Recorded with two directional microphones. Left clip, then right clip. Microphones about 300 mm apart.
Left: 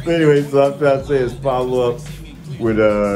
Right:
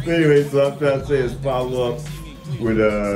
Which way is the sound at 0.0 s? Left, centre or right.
Centre.